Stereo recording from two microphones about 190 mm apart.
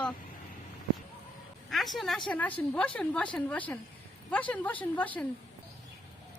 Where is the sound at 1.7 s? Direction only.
Centre (ahead or behind).